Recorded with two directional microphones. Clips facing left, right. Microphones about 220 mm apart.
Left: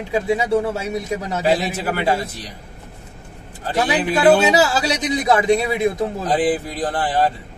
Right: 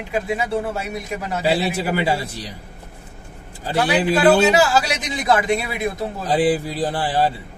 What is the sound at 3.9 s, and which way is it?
Speech, 20° left (ahead or behind).